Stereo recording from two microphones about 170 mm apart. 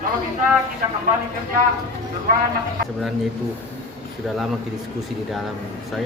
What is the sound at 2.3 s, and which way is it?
Speech, 60° right (ahead or behind).